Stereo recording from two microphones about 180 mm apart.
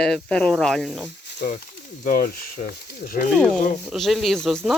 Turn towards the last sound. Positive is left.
turn(degrees=0)  # may be behind; listen again after turning